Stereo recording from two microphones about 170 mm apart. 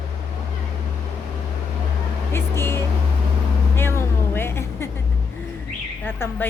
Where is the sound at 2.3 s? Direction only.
15° left (ahead or behind).